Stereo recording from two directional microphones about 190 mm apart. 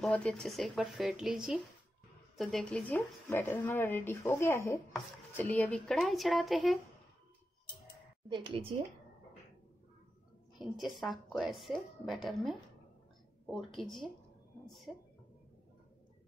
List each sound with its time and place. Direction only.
0.0 s a woman's voice: 5° left (ahead or behind)
8.3 s a woman's voice: 25° right (ahead or behind)
10.6 s a woman's voice: centre (ahead or behind)
13.7 s a woman's voice: centre (ahead or behind)